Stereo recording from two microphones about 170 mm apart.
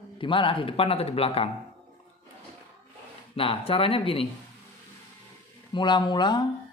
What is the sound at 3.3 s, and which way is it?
Speech, 35° left (ahead or behind).